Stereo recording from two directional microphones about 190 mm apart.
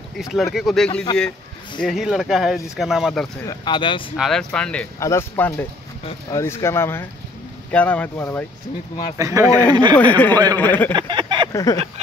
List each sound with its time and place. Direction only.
0.2 s speech: centre (ahead or behind)
3.4 s speech: 25° left (ahead or behind)
4.2 s speech: centre (ahead or behind)
9.1 s speech: 15° right (ahead or behind)
9.9 s speech: 10° left (ahead or behind)
10.3 s a man's voice: 20° right (ahead or behind)
10.6 s speech: 10° left (ahead or behind)
10.9 s a sound: 25° right (ahead or behind)
11.5 s a sound: 15° left (ahead or behind)